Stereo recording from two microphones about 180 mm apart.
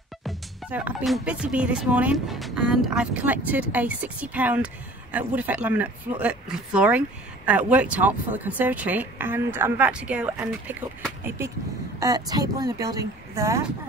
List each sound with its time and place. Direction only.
0.2 s speech: 5° right (ahead or behind)